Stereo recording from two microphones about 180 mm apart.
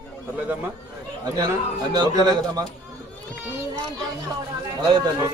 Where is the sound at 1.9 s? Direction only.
20° right (ahead or behind).